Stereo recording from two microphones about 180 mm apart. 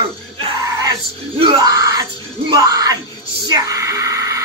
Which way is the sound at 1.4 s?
20° right (ahead or behind).